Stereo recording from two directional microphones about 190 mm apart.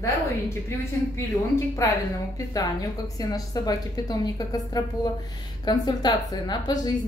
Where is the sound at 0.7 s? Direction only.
15° left (ahead or behind).